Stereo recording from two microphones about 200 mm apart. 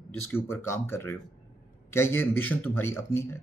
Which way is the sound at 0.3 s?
10° left (ahead or behind).